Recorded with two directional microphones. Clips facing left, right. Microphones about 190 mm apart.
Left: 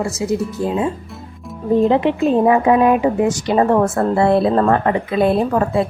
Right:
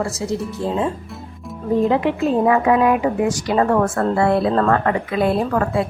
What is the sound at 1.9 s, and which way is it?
A woman's voice, 25° left (ahead or behind).